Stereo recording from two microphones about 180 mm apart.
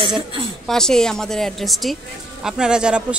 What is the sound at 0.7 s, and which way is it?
A woman's voice, 5° left (ahead or behind).